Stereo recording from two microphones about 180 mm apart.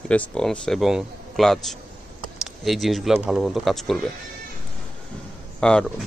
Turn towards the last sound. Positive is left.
turn(degrees=5)  # may be behind; listen again after turning